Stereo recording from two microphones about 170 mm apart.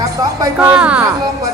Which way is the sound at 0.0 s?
20° right (ahead or behind).